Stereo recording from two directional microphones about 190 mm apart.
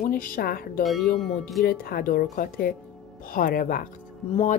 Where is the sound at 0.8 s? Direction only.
Centre (ahead or behind).